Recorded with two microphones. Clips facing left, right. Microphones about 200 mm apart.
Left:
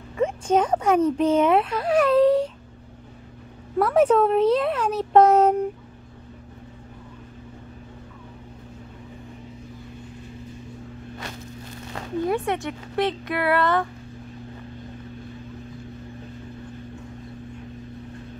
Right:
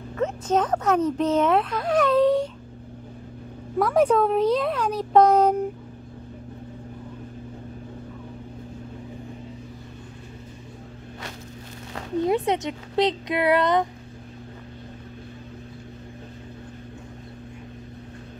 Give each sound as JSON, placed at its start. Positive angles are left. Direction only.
{"t": 0.2, "sound": "speech", "side_deg": 10}
{"t": 3.7, "sound": "a child's voice", "side_deg": 5}
{"t": 12.2, "sound": "speech", "side_deg": -20}